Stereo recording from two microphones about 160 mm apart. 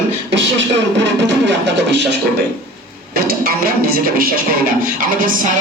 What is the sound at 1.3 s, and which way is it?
Music, 90° right.